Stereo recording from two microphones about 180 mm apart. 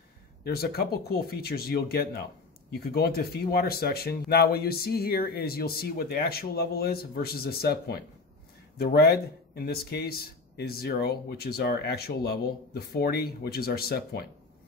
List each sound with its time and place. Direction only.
0.4 s speech: 60° left (ahead or behind)